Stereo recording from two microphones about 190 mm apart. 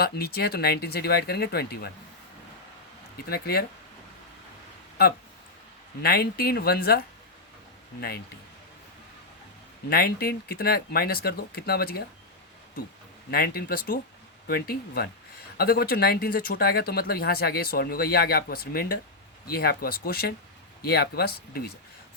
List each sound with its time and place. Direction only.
0.0 s speech: 55° left (ahead or behind)
3.2 s speech: 55° left (ahead or behind)
6.0 s speech: 55° left (ahead or behind)
9.9 s speech: 55° left (ahead or behind)
13.3 s speech: 55° left (ahead or behind)